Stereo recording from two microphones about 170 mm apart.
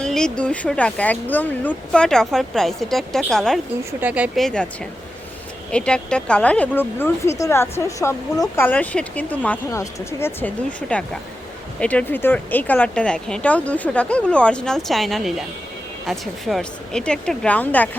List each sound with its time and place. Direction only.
0.0 s speech: 5° left (ahead or behind)
4.0 s speech: 10° right (ahead or behind)
4.4 s speech: 5° left (ahead or behind)
5.7 s speech: 5° left (ahead or behind)